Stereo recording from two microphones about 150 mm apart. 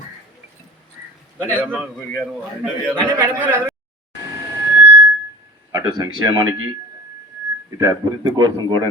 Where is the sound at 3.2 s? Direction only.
15° right (ahead or behind).